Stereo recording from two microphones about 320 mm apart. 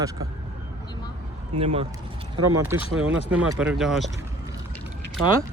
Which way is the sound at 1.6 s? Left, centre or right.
Centre.